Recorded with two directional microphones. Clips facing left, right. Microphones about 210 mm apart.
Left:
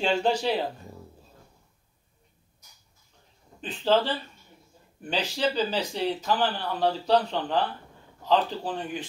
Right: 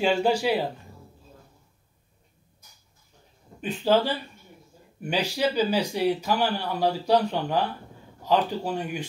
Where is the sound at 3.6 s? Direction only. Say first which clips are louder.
Right 2 dB; 10° right (ahead or behind).